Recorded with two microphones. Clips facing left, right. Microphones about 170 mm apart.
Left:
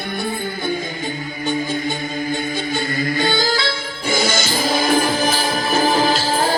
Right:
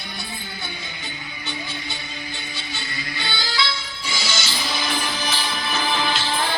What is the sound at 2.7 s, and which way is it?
Music, 50° left (ahead or behind).